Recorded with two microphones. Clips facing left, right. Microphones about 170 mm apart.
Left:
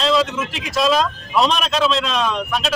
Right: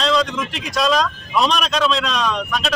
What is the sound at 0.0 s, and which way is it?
Speech, 5° left (ahead or behind).